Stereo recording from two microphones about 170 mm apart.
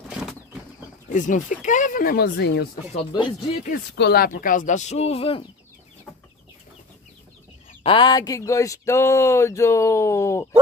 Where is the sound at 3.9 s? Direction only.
70° left (ahead or behind); by 5.4 s 35° left (ahead or behind).